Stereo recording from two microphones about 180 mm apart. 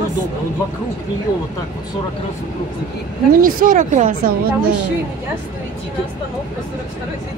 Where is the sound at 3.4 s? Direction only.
50° right (ahead or behind).